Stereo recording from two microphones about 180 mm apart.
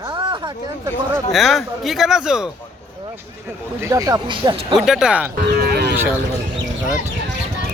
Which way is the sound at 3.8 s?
15° right (ahead or behind).